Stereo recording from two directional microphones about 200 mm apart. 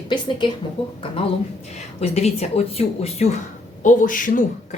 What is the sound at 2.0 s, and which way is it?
A woman's voice, 30° left (ahead or behind).